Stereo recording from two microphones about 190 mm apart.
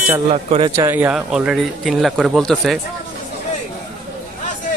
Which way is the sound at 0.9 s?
5° right (ahead or behind).